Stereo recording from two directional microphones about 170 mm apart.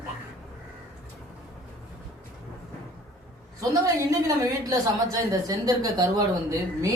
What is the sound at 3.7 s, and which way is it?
A woman's voice, 20° right (ahead or behind).